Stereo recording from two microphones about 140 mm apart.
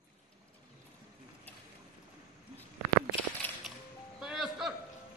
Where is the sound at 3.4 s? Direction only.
15° left (ahead or behind).